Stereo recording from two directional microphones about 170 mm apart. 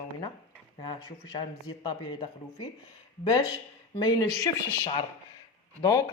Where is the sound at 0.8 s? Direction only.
30° left (ahead or behind).